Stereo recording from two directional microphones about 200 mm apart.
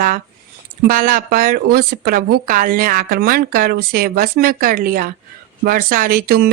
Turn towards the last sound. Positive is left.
turn(degrees=-50)  # may be behind; listen again after turning